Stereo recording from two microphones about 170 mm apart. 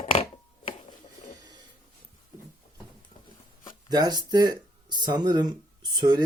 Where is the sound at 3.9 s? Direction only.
25° right (ahead or behind).